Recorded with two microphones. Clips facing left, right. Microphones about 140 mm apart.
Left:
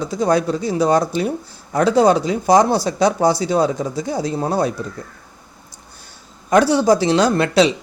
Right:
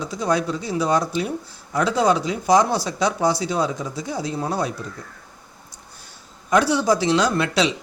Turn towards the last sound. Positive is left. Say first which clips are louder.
# left 5 dB
turn(degrees=40)  # may be behind; listen again after turning